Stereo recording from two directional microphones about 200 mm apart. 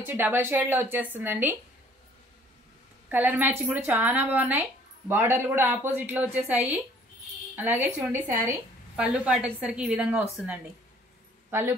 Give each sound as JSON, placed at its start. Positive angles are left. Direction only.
{"t": 0.0, "sound": "a woman's voice", "side_deg": -10}
{"t": 3.1, "sound": "a woman's voice", "side_deg": -10}